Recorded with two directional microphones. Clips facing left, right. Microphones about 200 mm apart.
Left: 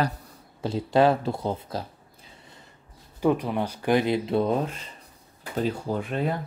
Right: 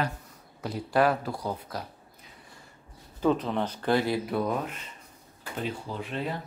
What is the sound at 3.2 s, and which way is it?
Speech, 10° left (ahead or behind).